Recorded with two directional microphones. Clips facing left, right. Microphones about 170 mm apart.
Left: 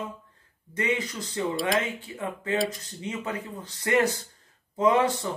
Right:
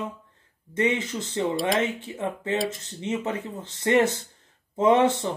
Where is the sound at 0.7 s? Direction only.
25° right (ahead or behind).